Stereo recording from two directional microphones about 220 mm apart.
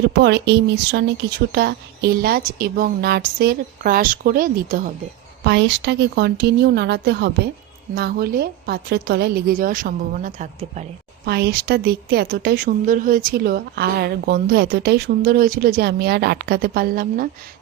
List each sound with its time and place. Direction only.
0.2 s a woman's voice: 50° right (ahead or behind)
5.4 s a woman's voice: 50° right (ahead or behind); by 10.8 s 30° right (ahead or behind)
11.3 s speech: 45° right (ahead or behind)